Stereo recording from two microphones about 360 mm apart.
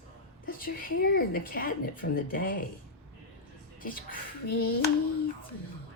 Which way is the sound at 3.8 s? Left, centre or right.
Left.